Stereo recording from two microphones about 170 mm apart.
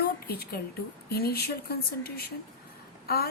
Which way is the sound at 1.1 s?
70° left (ahead or behind).